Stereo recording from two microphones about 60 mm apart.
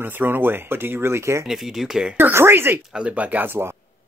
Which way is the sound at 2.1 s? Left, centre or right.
Right.